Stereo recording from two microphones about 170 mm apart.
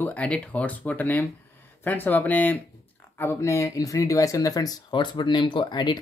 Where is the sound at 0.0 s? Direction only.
5° left (ahead or behind).